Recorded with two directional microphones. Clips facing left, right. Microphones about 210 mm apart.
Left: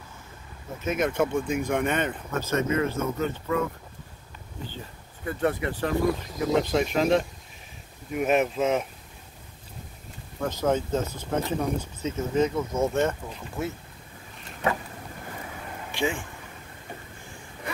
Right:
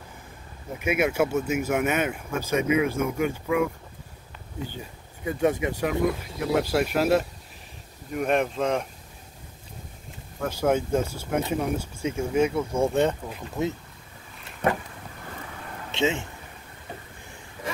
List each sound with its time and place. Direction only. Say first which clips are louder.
0.7 s speech: right 2 dB; 10° right (ahead or behind)
4.6 s speech: right 2 dB; 15° right (ahead or behind); by 8.8 s 5° left (ahead or behind)
10.4 s speech: right 1 dB; 10° right (ahead or behind)
15.9 s speech: right 3 dB; 20° right (ahead or behind)